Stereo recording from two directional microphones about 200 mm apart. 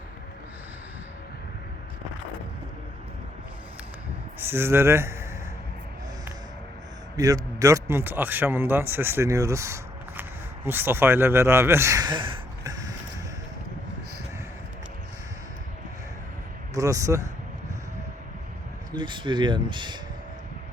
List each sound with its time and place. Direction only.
4.4 s speech: 10° right (ahead or behind)
7.2 s speech: 15° right (ahead or behind)
16.7 s speech: 15° right (ahead or behind)
18.9 s speech: 25° right (ahead or behind)